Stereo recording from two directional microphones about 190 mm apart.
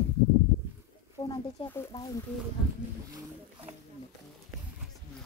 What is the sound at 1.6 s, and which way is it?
Speech, 15° left (ahead or behind).